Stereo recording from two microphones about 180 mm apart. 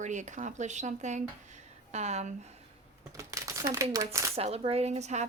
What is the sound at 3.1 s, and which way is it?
Crumpling, 20° right (ahead or behind).